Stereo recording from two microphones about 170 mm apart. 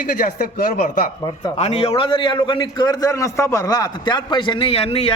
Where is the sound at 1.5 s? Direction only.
35° left (ahead or behind).